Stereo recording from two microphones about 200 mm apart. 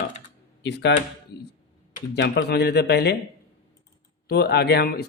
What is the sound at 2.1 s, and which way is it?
Speech, 60° left (ahead or behind).